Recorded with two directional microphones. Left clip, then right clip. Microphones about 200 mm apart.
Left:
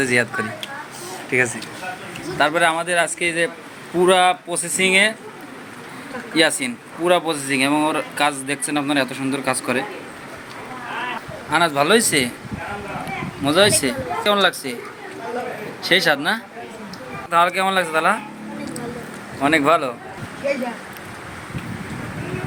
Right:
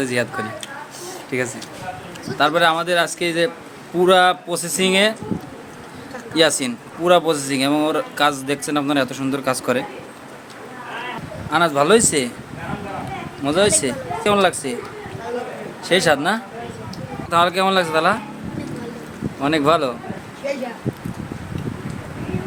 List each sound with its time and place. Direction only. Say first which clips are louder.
0.0 s a man's voice: left 3 dB; 10° right (ahead or behind)
2.4 s speech: right 1 dB; 20° right (ahead or behind)
6.6 s speech: even; 25° right (ahead or behind)
11.5 s a man's voice: right 1 dB; 15° right (ahead or behind)
13.4 s a man's voice: left 1 dB; 15° right (ahead or behind)
15.8 s a man's voice: even; 10° right (ahead or behind)
19.4 s speech: left 1 dB; 20° right (ahead or behind)